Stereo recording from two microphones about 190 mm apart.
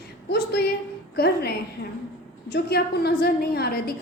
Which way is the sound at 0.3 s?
60° left (ahead or behind).